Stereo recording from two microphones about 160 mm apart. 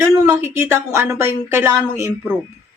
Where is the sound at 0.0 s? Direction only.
15° right (ahead or behind).